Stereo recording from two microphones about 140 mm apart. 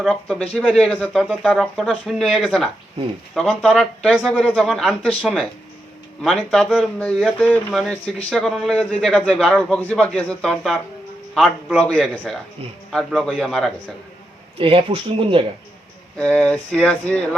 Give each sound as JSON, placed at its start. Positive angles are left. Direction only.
{"t": 0.1, "sound": "speech", "side_deg": 10}
{"t": 6.5, "sound": "speech", "side_deg": 0}
{"t": 11.8, "sound": "speech", "side_deg": 5}
{"t": 14.6, "sound": "speech", "side_deg": -40}
{"t": 16.1, "sound": "speech", "side_deg": 10}